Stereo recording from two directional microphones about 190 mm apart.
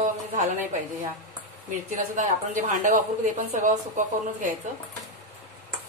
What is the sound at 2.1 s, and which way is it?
Speech, 40° right (ahead or behind).